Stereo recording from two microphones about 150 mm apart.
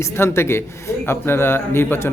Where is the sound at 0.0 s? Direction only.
15° left (ahead or behind).